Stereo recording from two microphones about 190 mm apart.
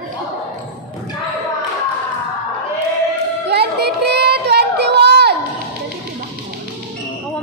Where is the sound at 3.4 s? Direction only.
60° right (ahead or behind).